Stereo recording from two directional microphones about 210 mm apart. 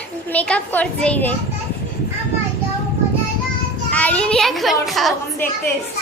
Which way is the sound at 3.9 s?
5° left (ahead or behind).